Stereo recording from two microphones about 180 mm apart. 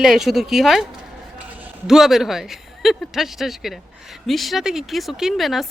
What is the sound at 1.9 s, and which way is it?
Speech, centre (ahead or behind).